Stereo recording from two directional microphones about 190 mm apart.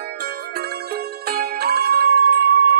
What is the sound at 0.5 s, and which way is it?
Music, 55° right (ahead or behind).